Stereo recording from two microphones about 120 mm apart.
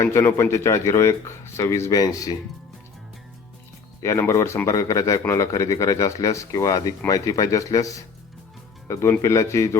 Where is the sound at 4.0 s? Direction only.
25° left (ahead or behind).